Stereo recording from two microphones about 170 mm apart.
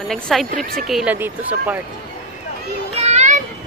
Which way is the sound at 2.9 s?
40° right (ahead or behind).